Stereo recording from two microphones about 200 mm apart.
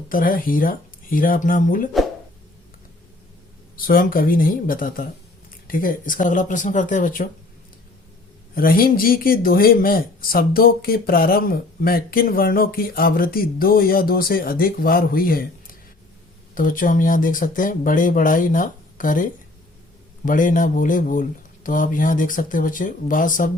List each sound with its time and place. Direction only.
0.1 s speech: 45° left (ahead or behind)
3.8 s speech: 45° left (ahead or behind)
8.5 s speech: 45° left (ahead or behind)